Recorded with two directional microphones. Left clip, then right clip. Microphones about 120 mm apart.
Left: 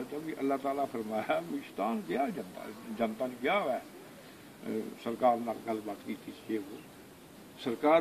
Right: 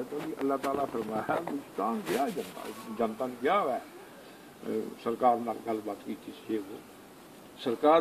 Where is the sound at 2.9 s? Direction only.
35° left (ahead or behind).